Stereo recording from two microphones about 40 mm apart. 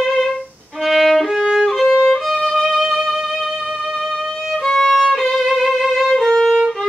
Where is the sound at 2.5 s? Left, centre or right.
Centre.